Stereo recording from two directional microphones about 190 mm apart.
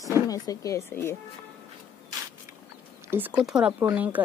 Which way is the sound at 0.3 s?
15° left (ahead or behind).